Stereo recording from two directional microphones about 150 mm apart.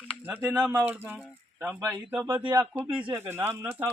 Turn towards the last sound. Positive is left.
turn(degrees=-15)  # may be behind; listen again after turning